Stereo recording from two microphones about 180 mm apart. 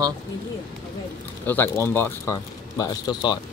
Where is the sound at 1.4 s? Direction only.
10° left (ahead or behind).